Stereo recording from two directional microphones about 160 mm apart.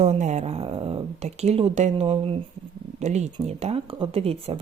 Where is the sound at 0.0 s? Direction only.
45° right (ahead or behind).